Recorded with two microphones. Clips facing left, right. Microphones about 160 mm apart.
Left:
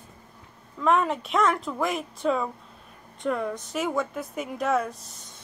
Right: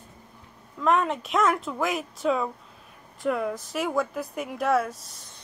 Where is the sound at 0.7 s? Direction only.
Centre (ahead or behind).